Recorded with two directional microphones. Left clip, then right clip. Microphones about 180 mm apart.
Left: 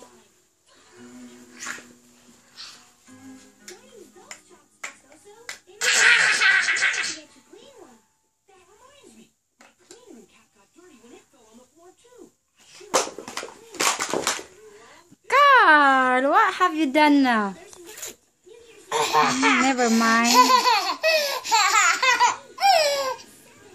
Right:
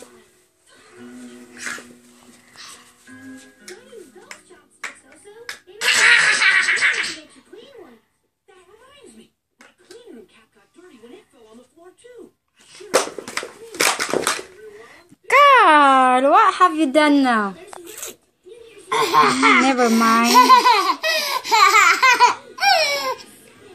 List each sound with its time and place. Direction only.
5.8 s music: 20° left (ahead or behind)
13.3 s a sound: 20° right (ahead or behind)
15.2 s a sound: 5° right (ahead or behind); by 18.1 s 15° left (ahead or behind)
18.9 s speech: 30° left (ahead or behind)
19.6 s a child's voice: 10° left (ahead or behind)
20.2 s laughter: 25° left (ahead or behind)